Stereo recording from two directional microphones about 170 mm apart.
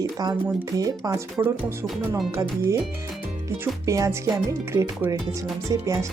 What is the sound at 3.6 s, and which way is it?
Speech, 20° right (ahead or behind).